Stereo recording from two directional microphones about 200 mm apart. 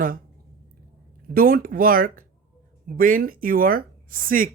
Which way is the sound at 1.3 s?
45° right (ahead or behind).